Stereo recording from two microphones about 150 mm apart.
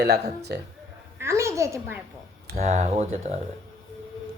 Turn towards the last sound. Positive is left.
turn(degrees=-45)  # may be behind; listen again after turning